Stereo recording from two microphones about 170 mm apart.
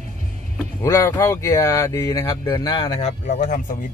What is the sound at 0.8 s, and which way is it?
Speech, 15° left (ahead or behind).